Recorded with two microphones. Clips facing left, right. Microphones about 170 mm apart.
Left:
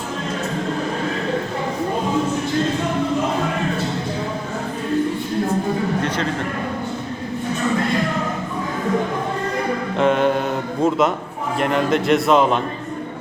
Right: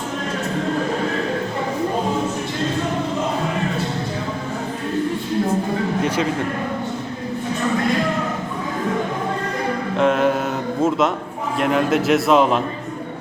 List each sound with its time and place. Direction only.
10.0 s mantra: centre (ahead or behind)
11.6 s speech: centre (ahead or behind)